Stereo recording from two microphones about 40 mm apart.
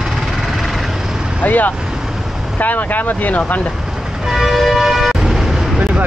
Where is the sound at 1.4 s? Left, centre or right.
Left.